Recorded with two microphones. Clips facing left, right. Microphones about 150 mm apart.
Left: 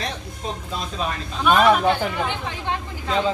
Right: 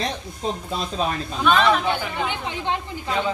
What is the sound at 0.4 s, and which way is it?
Speech, 30° right (ahead or behind).